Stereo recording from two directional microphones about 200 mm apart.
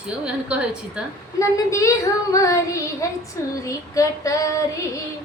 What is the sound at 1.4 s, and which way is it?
A woman's voice, 15° left (ahead or behind).